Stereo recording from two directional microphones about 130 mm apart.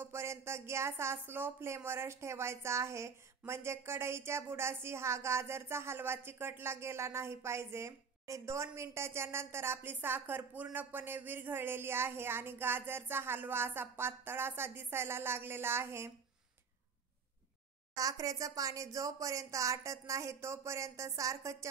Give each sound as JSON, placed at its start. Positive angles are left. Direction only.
{"t": 0.0, "sound": "speech", "side_deg": -20}
{"t": 17.9, "sound": "speech", "side_deg": -25}